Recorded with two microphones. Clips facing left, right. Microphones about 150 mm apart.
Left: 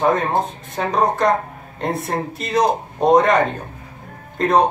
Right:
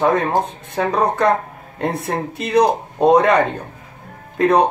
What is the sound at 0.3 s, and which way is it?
Speech, 65° right (ahead or behind).